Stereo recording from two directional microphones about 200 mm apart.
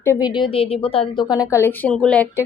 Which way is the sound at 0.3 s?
25° left (ahead or behind).